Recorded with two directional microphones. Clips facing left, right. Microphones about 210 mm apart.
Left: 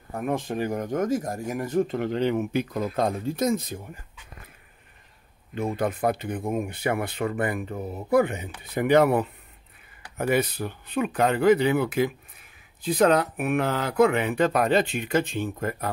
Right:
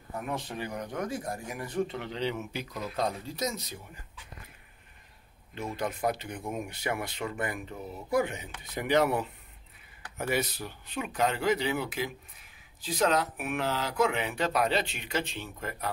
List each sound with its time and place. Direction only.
0.1 s speech: 50° left (ahead or behind)
5.5 s speech: 50° left (ahead or behind)